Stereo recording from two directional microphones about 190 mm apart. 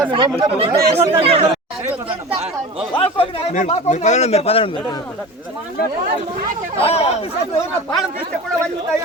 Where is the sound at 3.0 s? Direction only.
30° left (ahead or behind).